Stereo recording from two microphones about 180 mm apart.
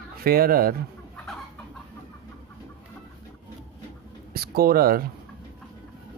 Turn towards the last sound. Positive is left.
turn(degrees=-55)  # may be behind; listen again after turning